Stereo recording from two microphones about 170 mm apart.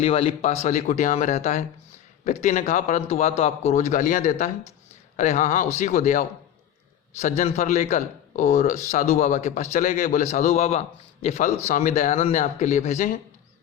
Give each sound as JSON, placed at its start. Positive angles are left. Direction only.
{"t": 0.0, "sound": "a man's voice", "side_deg": 35}